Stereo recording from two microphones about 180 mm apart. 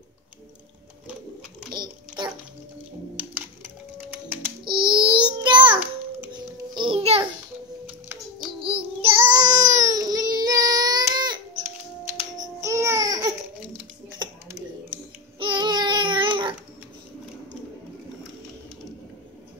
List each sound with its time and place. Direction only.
1.7 s a sound: 25° right (ahead or behind)
3.2 s music: 10° right (ahead or behind)
4.9 s a sound: 25° right (ahead or behind)
5.8 s babbling: 5° right (ahead or behind)
6.8 s music: 30° right (ahead or behind)
8.5 s child singing: 30° right (ahead or behind)
12.4 s baby cry: 15° right (ahead or behind)
14.0 s typing: 20° right (ahead or behind)
15.3 s babbling: 25° right (ahead or behind)